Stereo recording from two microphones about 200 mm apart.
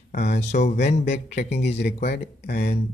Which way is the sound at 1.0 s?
55° left (ahead or behind).